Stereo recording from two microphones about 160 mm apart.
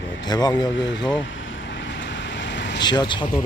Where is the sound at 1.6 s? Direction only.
90° left.